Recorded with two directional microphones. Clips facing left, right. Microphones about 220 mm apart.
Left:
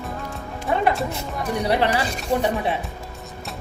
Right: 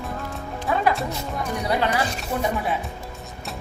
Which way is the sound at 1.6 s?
30° left (ahead or behind).